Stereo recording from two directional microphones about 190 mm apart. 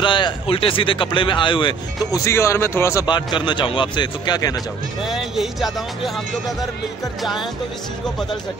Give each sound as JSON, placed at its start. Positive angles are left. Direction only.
{"t": 0.0, "sound": "speech", "side_deg": 25}
{"t": 5.0, "sound": "speech", "side_deg": 0}